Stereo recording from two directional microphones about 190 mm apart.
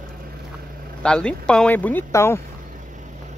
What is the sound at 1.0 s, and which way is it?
Speech, 5° left (ahead or behind).